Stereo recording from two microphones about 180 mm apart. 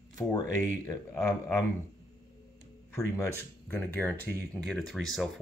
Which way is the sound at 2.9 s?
15° left (ahead or behind).